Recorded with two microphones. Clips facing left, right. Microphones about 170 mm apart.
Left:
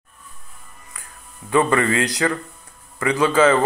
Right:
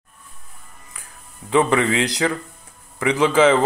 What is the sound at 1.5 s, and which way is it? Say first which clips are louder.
Speech: even; 10° right (ahead or behind).